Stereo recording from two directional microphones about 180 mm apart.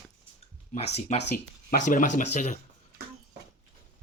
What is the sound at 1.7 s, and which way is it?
Speech, 45° left (ahead or behind).